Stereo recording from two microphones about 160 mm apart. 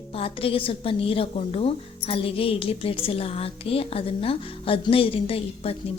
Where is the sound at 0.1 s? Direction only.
35° left (ahead or behind).